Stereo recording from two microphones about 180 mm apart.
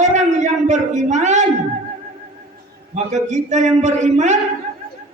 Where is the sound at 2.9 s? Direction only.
40° right (ahead or behind).